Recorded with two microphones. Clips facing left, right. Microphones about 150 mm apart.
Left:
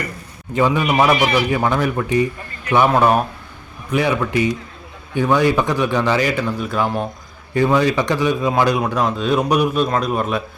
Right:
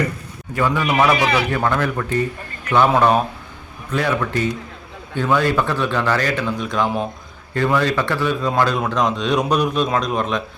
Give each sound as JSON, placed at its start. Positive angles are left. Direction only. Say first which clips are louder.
{"t": 0.5, "sound": "a man's voice", "louder": "left 2 dB", "side_deg": 15}